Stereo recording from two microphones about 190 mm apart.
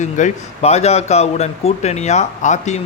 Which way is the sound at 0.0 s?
40° left (ahead or behind).